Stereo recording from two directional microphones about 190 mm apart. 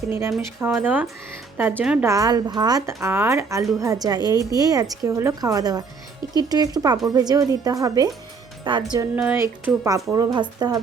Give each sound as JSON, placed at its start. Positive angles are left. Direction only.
{"t": 0.1, "sound": "a woman's voice", "side_deg": -15}
{"t": 2.0, "sound": "a woman's voice", "side_deg": -20}
{"t": 9.1, "sound": "speech", "side_deg": -10}